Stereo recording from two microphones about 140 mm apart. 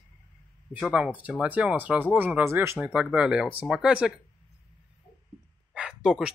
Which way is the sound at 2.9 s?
5° right (ahead or behind).